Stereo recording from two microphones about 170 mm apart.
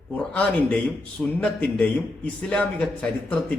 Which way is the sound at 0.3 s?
5° left (ahead or behind).